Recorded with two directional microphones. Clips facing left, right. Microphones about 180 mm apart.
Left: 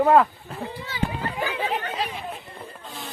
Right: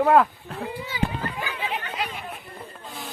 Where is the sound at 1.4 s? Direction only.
35° left (ahead or behind).